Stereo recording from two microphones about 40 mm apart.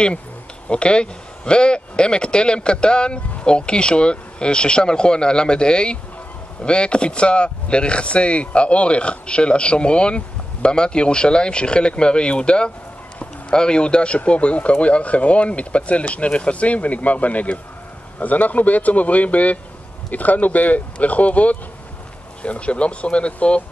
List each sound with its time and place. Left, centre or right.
0.7 s speech: left